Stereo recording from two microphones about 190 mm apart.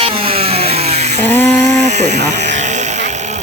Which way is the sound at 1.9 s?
35° right (ahead or behind).